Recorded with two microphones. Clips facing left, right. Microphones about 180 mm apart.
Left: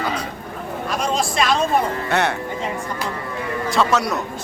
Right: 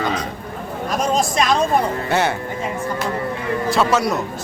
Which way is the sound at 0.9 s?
45° right (ahead or behind).